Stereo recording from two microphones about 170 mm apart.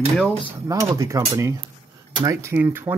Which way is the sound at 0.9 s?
15° right (ahead or behind).